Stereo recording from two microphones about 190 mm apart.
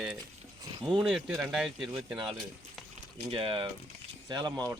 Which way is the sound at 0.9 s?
5° right (ahead or behind).